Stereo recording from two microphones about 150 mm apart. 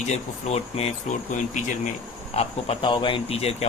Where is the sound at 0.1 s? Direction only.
45° left (ahead or behind).